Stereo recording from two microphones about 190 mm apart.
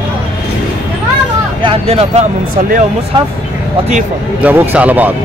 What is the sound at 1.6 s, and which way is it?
Speech, 30° right (ahead or behind).